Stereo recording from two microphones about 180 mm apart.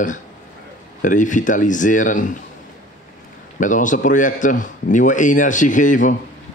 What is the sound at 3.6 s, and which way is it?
A man's voice, 45° left (ahead or behind).